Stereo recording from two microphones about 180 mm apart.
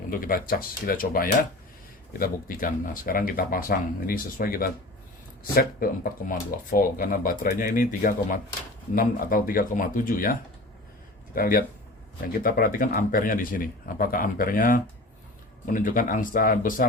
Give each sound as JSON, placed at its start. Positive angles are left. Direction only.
{"t": 0.1, "sound": "a man's voice", "side_deg": 55}
{"t": 11.3, "sound": "a man's voice", "side_deg": 55}